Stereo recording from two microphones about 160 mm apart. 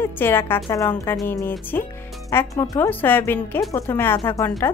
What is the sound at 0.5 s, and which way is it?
A woman's voice, 25° left (ahead or behind).